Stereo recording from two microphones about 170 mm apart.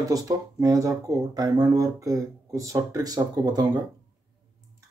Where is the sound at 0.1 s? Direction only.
20° right (ahead or behind).